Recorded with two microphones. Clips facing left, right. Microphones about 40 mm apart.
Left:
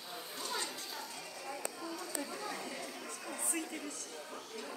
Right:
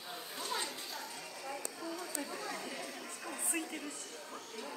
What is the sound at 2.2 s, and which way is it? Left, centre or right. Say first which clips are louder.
Chatter: even; centre.